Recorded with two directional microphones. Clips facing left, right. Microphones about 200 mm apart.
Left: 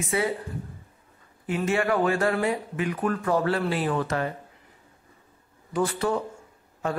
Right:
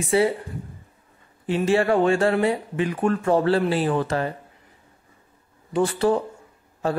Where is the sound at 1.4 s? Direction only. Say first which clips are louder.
Right 5 dB; 30° right (ahead or behind).